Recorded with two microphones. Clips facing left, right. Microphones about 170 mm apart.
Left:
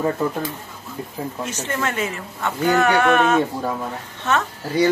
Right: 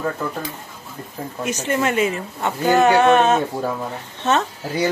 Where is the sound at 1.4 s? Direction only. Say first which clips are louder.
Right 6 dB; 20° right (ahead or behind).